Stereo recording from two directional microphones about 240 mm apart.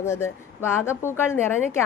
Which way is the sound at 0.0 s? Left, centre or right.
Centre.